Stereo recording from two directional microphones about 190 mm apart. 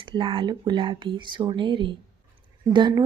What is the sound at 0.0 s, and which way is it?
Speech, 25° right (ahead or behind).